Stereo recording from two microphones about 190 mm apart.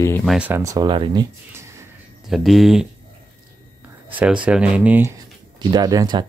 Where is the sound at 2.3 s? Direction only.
Centre (ahead or behind).